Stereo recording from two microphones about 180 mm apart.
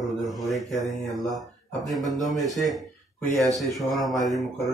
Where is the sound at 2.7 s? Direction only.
Centre (ahead or behind).